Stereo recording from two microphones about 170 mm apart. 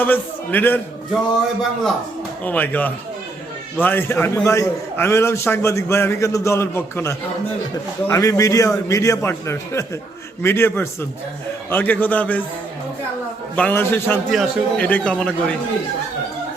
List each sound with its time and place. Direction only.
0.0 s a man's voice: 10° left (ahead or behind)
2.4 s a man's voice: 10° left (ahead or behind)
13.6 s a man's voice: 10° left (ahead or behind)